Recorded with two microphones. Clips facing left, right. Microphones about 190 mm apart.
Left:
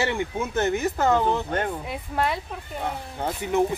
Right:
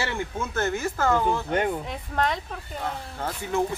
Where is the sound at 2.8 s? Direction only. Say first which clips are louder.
Left 2 dB; 20° left (ahead or behind).